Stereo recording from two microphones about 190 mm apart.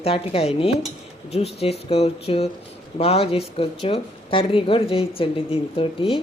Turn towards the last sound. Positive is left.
turn(degrees=30)  # may be behind; listen again after turning